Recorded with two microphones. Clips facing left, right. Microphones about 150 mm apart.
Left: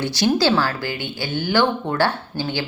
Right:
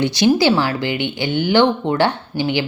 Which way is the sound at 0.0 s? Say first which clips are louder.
Right 4 dB; 15° right (ahead or behind).